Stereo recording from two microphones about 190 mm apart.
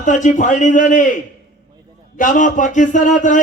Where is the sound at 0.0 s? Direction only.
40° left (ahead or behind).